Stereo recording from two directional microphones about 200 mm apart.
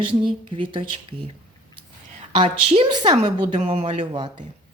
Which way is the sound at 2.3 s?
25° right (ahead or behind).